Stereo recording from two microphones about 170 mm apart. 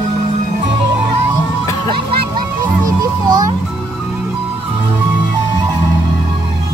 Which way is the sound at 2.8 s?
20° right (ahead or behind).